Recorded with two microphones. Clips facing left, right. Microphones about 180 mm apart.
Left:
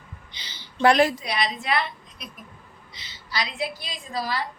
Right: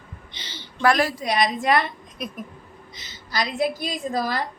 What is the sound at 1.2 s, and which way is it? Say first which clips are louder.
A woman's voice: right 6 dB; 45° right (ahead or behind).